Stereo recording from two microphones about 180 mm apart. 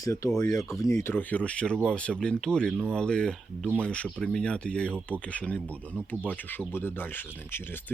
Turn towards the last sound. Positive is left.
turn(degrees=10)  # may be behind; listen again after turning